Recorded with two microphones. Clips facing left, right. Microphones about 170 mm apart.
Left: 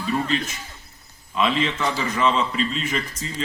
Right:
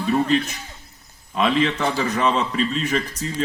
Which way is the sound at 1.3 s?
45° right (ahead or behind).